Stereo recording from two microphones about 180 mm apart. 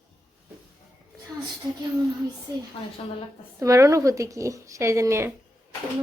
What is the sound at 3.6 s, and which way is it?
A woman's voice, 15° right (ahead or behind).